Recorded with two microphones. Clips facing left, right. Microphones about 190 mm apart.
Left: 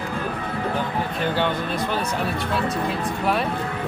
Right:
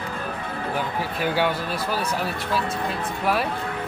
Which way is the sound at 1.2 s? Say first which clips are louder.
Right 1 dB; 10° right (ahead or behind).